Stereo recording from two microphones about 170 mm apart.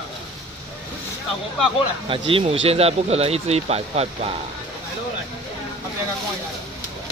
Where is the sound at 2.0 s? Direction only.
30° right (ahead or behind).